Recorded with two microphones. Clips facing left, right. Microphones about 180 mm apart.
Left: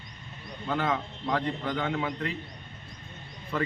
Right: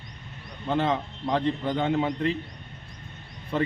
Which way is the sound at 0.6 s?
25° right (ahead or behind).